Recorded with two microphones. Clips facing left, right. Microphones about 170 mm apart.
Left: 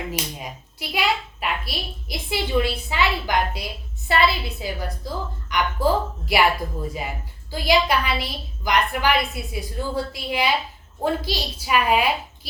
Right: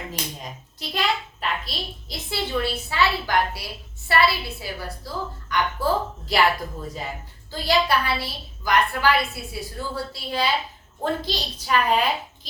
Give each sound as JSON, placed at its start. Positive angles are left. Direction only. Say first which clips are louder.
{"t": 0.1, "sound": "hands", "louder": "left 3 dB", "side_deg": 10}
{"t": 4.1, "sound": "a woman's voice", "louder": "left 1 dB", "side_deg": 20}